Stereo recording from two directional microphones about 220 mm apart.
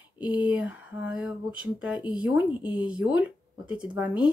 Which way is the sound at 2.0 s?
20° left (ahead or behind).